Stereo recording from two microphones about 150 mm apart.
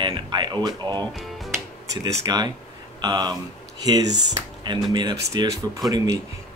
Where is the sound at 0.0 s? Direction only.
30° right (ahead or behind).